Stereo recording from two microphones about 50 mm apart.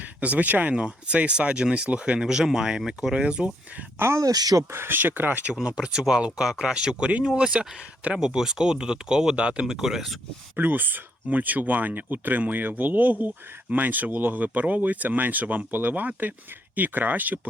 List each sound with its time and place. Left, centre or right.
0.0 s speech: right
3.9 s speech: right
5.6 s speech: centre
9.7 s speech: centre
10.5 s speech: right